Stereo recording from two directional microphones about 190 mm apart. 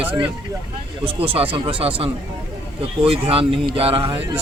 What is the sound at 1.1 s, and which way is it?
Speech, 30° right (ahead or behind).